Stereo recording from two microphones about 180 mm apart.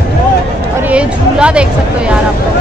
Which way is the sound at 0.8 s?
5° right (ahead or behind).